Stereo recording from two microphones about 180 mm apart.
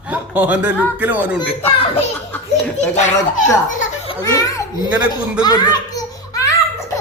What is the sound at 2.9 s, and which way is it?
Speech, 40° left (ahead or behind).